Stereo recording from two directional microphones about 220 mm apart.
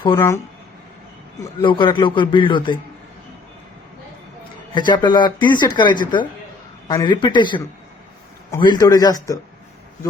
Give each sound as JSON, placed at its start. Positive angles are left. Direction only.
{"t": 0.0, "sound": "a man's voice", "side_deg": 15}
{"t": 1.4, "sound": "speech", "side_deg": 20}
{"t": 4.7, "sound": "a man's voice", "side_deg": 20}